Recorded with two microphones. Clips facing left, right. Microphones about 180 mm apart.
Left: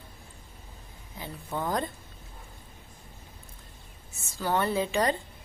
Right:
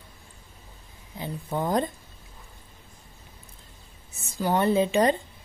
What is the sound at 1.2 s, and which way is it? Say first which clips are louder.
Speech: right 4 dB; 20° right (ahead or behind).